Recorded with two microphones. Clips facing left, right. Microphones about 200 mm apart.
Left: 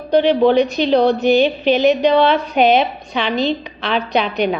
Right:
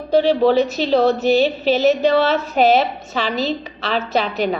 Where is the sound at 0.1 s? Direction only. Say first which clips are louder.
Left 2 dB; 5° right (ahead or behind).